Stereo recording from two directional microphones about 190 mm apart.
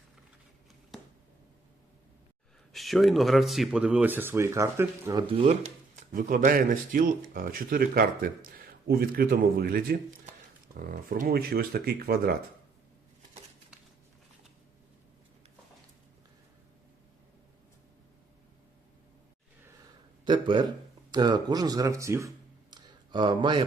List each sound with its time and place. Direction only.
2.7 s speech: centre (ahead or behind); by 5.2 s 15° right (ahead or behind)
5.2 s speech: 30° right (ahead or behind)
6.1 s speech: 45° right (ahead or behind)
20.2 s speech: 25° right (ahead or behind)
22.7 s a sound: 25° right (ahead or behind)